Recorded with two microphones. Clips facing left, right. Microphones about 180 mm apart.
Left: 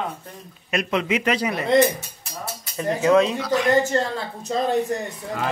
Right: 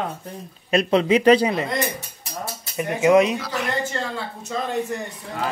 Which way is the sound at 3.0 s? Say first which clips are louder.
Right 2 dB; 15° right (ahead or behind).